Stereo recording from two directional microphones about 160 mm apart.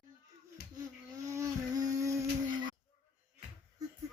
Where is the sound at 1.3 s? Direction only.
20° right (ahead or behind).